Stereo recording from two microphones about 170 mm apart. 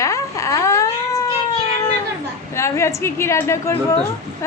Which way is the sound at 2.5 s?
15° left (ahead or behind).